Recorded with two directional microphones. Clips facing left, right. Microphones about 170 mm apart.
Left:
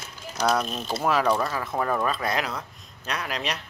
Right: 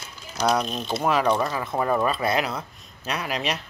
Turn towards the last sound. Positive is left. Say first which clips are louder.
# right 3 dB
turn(degrees=-5)  # may be behind; listen again after turning